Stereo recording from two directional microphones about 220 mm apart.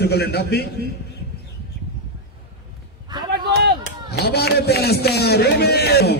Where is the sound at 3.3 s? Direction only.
45° right (ahead or behind).